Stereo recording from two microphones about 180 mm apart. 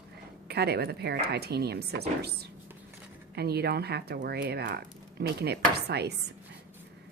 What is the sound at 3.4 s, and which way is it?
Speech, 60° right (ahead or behind).